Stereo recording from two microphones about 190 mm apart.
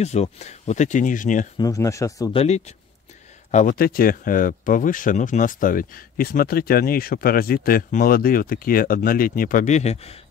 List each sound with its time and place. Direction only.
0.0 s speech: 35° left (ahead or behind)
1.6 s speech: 15° left (ahead or behind)
2.3 s speech: 35° left (ahead or behind)
3.5 s speech: 50° left (ahead or behind); by 10.2 s 35° left (ahead or behind)